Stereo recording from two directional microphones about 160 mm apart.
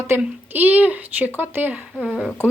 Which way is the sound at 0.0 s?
15° right (ahead or behind).